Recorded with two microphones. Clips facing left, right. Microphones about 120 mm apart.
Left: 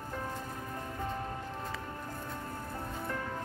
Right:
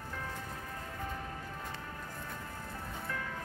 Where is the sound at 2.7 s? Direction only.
30° left (ahead or behind).